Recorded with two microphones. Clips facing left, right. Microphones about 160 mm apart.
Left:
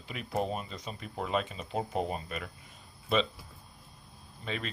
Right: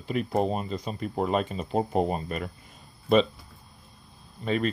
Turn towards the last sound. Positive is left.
turn(degrees=-45)  # may be behind; listen again after turning